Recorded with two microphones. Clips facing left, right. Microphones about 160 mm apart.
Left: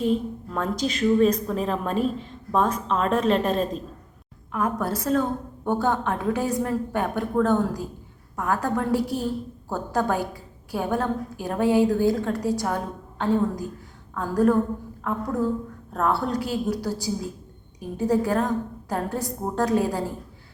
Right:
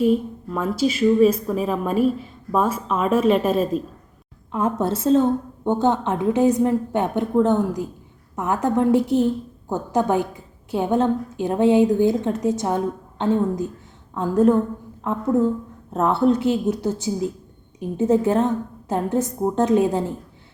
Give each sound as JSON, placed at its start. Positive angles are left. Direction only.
{"t": 0.0, "sound": "a woman's voice", "side_deg": -5}
{"t": 4.5, "sound": "a woman's voice", "side_deg": -25}